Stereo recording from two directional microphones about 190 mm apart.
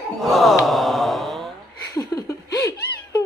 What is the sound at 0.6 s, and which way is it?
Mantra, centre (ahead or behind).